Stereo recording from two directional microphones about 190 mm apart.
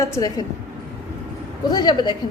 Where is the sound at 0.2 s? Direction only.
20° left (ahead or behind).